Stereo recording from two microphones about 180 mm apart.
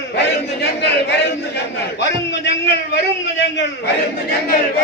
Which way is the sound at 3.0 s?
75° left (ahead or behind).